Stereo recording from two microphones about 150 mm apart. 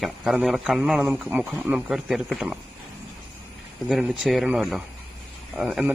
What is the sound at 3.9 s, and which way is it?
A man's voice, centre (ahead or behind).